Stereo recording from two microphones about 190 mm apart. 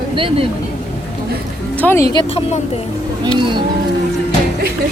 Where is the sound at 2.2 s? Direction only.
30° left (ahead or behind).